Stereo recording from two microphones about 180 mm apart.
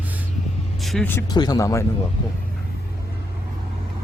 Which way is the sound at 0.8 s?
Centre (ahead or behind).